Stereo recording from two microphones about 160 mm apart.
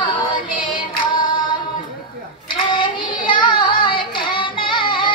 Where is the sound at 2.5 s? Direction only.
30° left (ahead or behind).